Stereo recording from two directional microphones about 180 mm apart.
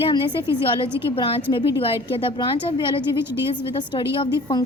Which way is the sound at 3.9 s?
25° left (ahead or behind).